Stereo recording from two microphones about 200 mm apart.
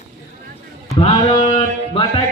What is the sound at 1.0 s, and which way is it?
Music, 30° left (ahead or behind).